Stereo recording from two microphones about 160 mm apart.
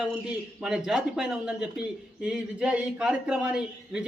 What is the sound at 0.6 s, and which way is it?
A man's voice, 5° right (ahead or behind).